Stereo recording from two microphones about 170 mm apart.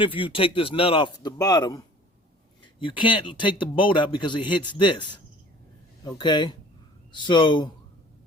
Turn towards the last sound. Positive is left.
turn(degrees=30)  # may be behind; listen again after turning